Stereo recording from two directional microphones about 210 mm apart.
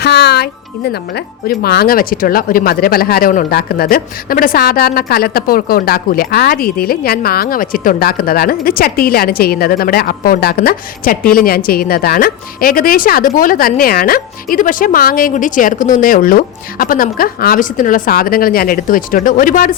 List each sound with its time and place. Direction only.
0.0 s speech: 50° left (ahead or behind)